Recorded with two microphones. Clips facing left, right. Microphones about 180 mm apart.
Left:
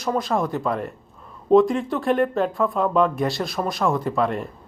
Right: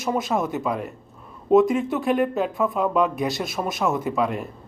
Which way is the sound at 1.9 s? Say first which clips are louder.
Left 4 dB; 5° right (ahead or behind).